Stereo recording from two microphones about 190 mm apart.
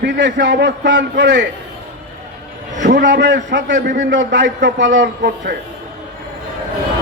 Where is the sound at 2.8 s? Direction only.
70° right (ahead or behind).